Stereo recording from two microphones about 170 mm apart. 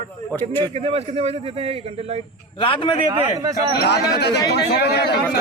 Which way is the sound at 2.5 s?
30° left (ahead or behind).